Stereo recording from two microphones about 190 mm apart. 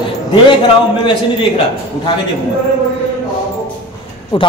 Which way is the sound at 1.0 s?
25° left (ahead or behind).